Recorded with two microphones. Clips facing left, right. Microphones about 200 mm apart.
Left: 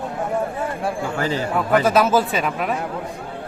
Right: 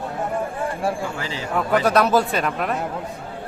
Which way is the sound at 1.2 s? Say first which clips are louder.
Left 4 dB; 50° left (ahead or behind).